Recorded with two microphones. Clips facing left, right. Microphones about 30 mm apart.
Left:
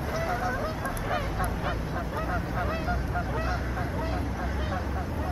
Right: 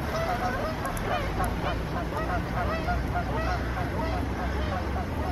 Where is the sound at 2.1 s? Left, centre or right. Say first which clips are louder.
Right 1 dB; centre.